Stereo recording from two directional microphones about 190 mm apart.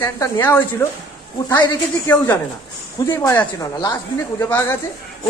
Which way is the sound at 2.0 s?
10° left (ahead or behind).